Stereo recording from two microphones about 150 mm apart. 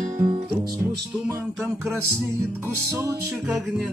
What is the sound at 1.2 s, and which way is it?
Music, 15° right (ahead or behind).